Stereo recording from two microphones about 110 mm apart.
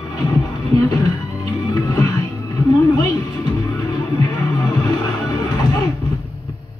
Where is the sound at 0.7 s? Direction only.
35° left (ahead or behind).